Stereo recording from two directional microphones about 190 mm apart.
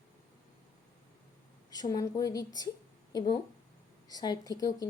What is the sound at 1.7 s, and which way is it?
Speech, 20° left (ahead or behind).